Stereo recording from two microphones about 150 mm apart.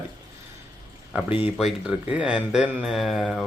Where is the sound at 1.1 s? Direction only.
10° right (ahead or behind).